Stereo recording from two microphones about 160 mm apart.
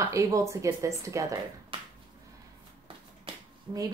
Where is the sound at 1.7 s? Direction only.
35° right (ahead or behind).